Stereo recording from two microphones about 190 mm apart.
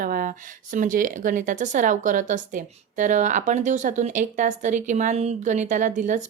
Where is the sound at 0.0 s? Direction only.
45° right (ahead or behind).